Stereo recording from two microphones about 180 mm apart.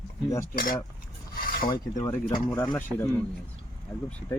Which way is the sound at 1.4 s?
50° left (ahead or behind).